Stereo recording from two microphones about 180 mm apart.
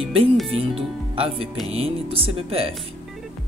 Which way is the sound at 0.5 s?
35° right (ahead or behind).